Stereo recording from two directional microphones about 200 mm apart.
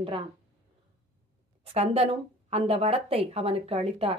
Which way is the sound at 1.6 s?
30° right (ahead or behind).